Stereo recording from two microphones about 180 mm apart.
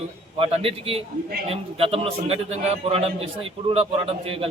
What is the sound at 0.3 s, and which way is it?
A man's voice, 30° right (ahead or behind).